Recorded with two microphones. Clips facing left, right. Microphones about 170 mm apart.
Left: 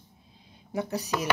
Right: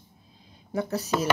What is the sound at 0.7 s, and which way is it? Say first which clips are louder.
Speech: right 2 dB; 15° left (ahead or behind).